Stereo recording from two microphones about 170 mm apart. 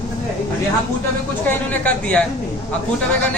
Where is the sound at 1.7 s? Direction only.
10° left (ahead or behind).